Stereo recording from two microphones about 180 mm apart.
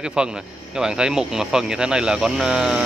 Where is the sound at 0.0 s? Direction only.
5° right (ahead or behind).